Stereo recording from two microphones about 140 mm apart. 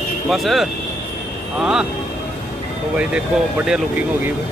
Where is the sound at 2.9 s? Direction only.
5° right (ahead or behind).